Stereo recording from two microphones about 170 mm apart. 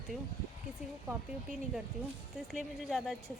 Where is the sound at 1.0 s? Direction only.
5° right (ahead or behind).